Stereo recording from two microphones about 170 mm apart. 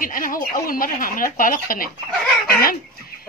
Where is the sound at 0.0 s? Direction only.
55° left (ahead or behind).